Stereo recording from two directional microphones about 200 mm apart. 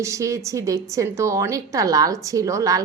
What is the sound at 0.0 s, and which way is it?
A woman's voice, 15° right (ahead or behind).